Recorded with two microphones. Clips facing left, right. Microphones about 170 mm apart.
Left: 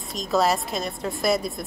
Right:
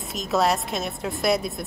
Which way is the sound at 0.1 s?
Centre (ahead or behind).